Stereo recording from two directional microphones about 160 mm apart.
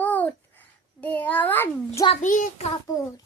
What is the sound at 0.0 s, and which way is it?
Babbling, 10° left (ahead or behind).